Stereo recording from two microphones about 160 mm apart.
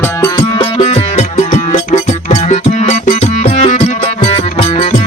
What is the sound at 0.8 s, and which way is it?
Music, 40° left (ahead or behind).